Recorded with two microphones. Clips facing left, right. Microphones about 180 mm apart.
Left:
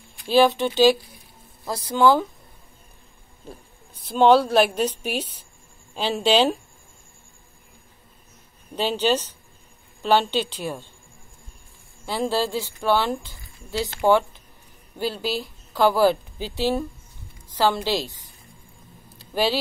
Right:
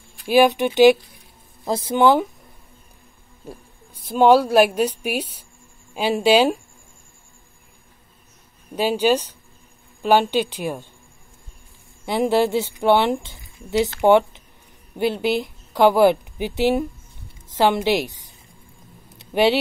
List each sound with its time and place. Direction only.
0.3 s a woman's voice: 15° right (ahead or behind)
3.4 s a woman's voice: 10° right (ahead or behind)
8.7 s a woman's voice: 10° right (ahead or behind)
12.1 s a woman's voice: 20° right (ahead or behind)
19.1 s a sound: 20° right (ahead or behind)